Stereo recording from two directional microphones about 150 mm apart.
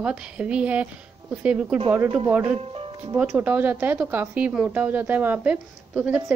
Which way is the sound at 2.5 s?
40° right (ahead or behind).